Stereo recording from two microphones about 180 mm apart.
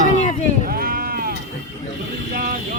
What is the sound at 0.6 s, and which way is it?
Sheep, 55° right (ahead or behind).